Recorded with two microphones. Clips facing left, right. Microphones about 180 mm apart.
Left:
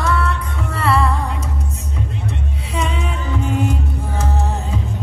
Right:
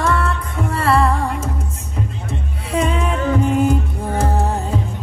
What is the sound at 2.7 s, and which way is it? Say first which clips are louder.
Music: right 5 dB; 55° right (ahead or behind).